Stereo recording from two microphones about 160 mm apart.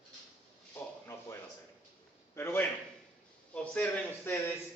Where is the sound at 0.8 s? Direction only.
15° left (ahead or behind).